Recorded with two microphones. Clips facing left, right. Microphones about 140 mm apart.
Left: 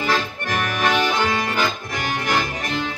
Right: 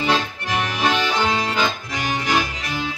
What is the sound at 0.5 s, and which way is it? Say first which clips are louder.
Accordion: even; 50° left (ahead or behind).